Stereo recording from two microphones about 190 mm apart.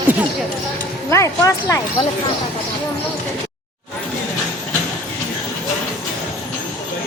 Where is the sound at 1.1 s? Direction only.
15° left (ahead or behind).